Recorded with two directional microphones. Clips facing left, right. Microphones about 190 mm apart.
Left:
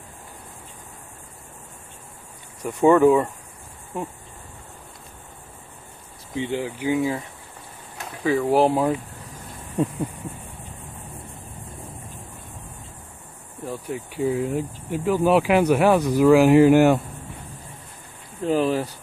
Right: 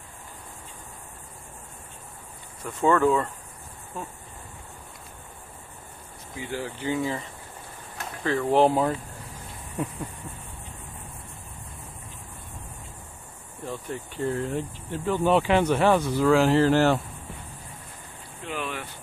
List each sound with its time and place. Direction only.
2.6 s speech: 15° left (ahead or behind)
6.3 s speech: 20° left (ahead or behind); by 8.9 s 5° left (ahead or behind)
13.7 s speech: 10° left (ahead or behind)
18.4 s speech: 35° left (ahead or behind)